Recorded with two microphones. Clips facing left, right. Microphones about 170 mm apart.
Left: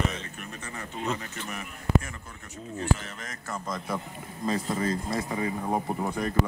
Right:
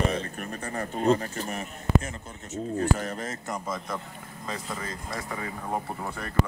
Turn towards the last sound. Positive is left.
turn(degrees=15)  # may be behind; listen again after turning